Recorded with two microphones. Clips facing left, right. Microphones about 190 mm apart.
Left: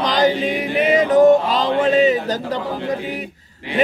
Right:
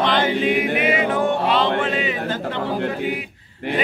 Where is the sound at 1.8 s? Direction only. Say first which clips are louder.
Left 8 dB; 40° left (ahead or behind).